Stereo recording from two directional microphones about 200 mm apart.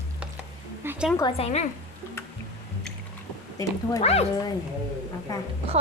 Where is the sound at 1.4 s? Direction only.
35° left (ahead or behind).